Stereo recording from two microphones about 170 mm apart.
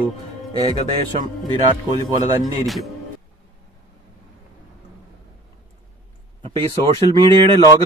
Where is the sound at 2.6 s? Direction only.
Centre (ahead or behind).